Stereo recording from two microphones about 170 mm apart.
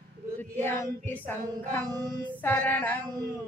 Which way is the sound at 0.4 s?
10° left (ahead or behind).